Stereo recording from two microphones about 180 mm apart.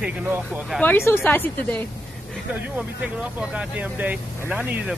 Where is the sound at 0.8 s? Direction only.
10° left (ahead or behind).